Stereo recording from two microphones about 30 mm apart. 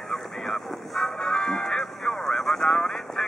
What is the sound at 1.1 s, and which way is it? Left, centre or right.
Music, left.